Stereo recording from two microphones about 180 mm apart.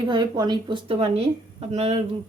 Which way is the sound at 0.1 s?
25° right (ahead or behind).